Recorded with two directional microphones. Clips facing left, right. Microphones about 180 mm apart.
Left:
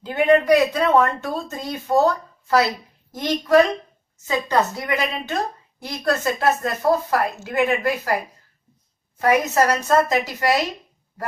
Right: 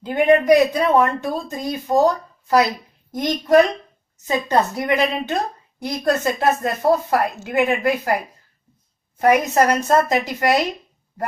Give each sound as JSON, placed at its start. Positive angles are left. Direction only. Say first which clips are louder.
{"t": 0.0, "sound": "a woman's voice", "louder": "right 1 dB", "side_deg": -15}
{"t": 9.2, "sound": "a woman's voice", "louder": "right 2 dB", "side_deg": -20}